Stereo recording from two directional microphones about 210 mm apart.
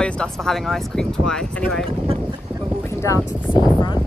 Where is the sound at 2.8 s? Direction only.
15° left (ahead or behind).